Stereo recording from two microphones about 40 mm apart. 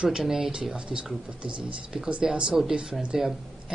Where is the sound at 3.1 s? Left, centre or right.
Centre.